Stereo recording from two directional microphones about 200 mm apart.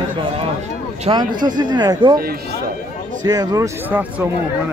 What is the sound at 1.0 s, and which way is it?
Speech, 20° right (ahead or behind).